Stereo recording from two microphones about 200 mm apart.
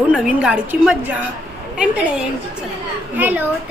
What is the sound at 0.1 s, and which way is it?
A woman's voice, 5° right (ahead or behind).